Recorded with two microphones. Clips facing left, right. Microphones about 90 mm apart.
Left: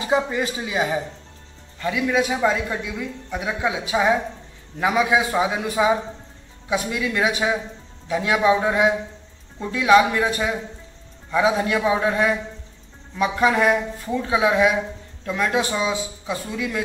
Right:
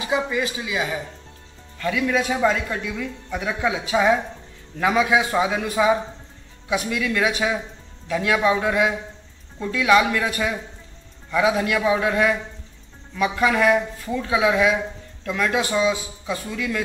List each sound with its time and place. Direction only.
0.0 s speech: 35° left (ahead or behind)
1.8 s a woman's voice: 15° left (ahead or behind)